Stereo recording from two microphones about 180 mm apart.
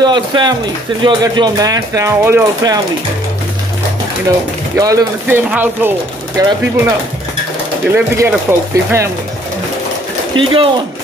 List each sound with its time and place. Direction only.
0.0 s speech: 25° right (ahead or behind)
4.7 s speech: 20° right (ahead or behind)
7.9 s speech: 15° right (ahead or behind)
10.3 s speech: 30° right (ahead or behind)